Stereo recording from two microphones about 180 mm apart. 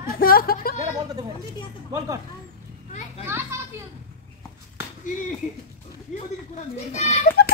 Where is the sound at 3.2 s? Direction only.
15° right (ahead or behind).